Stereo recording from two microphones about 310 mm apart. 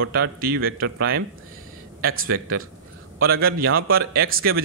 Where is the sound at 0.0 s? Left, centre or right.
Right.